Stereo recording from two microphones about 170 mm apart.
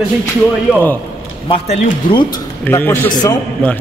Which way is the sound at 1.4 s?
30° left (ahead or behind).